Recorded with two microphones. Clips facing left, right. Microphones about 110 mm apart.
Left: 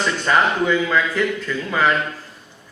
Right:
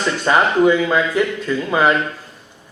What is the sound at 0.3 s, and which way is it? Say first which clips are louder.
A man's voice: right 5 dB; 20° right (ahead or behind).